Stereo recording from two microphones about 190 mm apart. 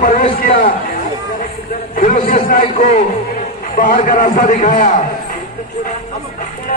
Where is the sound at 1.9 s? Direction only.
45° left (ahead or behind).